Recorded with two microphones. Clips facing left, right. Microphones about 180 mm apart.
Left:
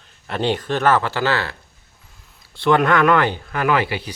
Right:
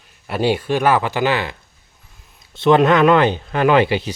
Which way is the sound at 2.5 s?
20° right (ahead or behind).